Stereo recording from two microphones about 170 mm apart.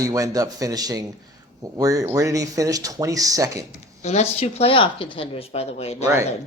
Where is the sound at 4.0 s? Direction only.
40° left (ahead or behind).